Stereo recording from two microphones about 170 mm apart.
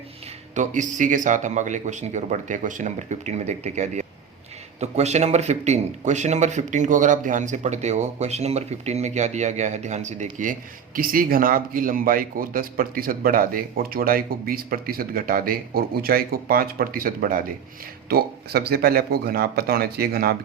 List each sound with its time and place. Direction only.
0.5 s speech: 45° right (ahead or behind); by 20.3 s 65° right (ahead or behind)